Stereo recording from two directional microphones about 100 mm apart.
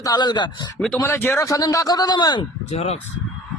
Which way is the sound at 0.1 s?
45° left (ahead or behind).